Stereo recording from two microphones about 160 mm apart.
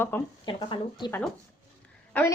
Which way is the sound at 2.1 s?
10° left (ahead or behind).